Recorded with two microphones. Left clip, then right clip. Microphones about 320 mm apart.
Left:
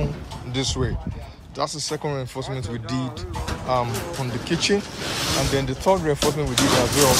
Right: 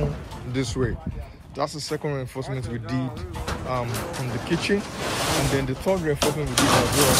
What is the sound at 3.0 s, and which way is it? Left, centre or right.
Speech, left.